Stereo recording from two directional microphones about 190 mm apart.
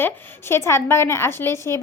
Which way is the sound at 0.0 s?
10° left (ahead or behind).